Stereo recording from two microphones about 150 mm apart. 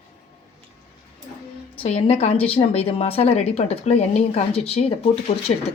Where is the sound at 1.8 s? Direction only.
45° left (ahead or behind).